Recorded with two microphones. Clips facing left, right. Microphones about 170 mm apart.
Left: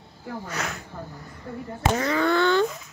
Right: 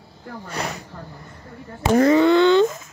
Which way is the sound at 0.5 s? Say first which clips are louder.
Right 6 dB; 35° right (ahead or behind).